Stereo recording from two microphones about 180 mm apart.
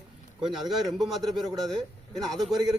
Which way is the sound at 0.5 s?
Centre (ahead or behind).